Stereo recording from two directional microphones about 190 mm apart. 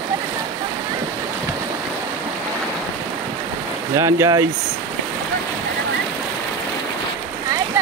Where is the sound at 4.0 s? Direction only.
15° right (ahead or behind).